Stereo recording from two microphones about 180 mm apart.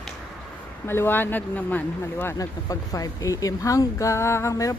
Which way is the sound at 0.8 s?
10° left (ahead or behind).